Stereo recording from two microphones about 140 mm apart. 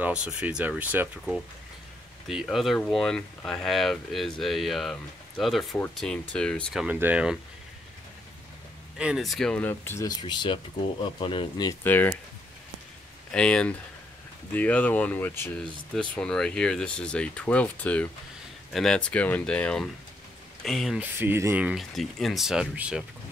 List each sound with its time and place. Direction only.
0.0 s speech: 10° right (ahead or behind)
2.2 s speech: centre (ahead or behind)
6.8 s speech: 10° right (ahead or behind)
8.9 s speech: 5° right (ahead or behind); by 10.0 s 15° left (ahead or behind)
10.0 s speech: 30° left (ahead or behind)
11.8 s speech: 10° left (ahead or behind)
13.3 s speech: 5° left (ahead or behind)
21.0 s speech: 15° right (ahead or behind)